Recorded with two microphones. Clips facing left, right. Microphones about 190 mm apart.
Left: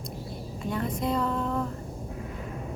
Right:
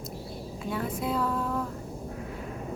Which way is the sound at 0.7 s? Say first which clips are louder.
Left 2 dB; 5° right (ahead or behind).